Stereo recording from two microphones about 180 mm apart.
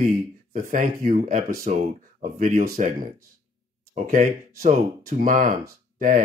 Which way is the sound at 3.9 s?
45° right (ahead or behind).